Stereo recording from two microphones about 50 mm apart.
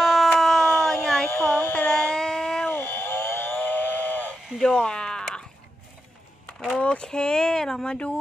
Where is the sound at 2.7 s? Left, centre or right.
Left.